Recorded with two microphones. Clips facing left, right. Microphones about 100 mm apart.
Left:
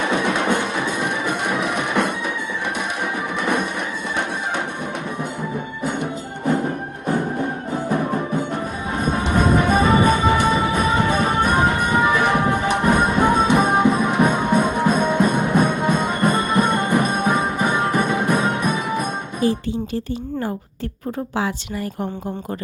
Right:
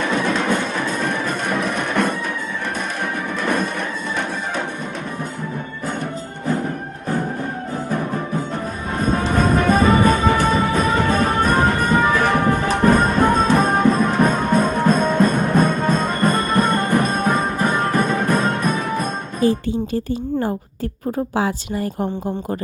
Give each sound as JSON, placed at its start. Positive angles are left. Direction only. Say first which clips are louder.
{"t": 0.0, "sound": "music", "louder": "even", "side_deg": 15}
{"t": 7.1, "sound": "music", "louder": "left 2 dB", "side_deg": 20}